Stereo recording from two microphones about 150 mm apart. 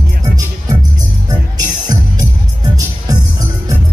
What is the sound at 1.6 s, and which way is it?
Music, 25° right (ahead or behind).